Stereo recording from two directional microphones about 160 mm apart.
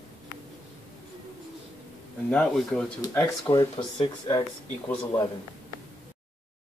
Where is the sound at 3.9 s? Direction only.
35° left (ahead or behind).